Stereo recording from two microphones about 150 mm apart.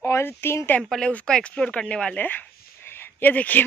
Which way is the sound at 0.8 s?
5° left (ahead or behind).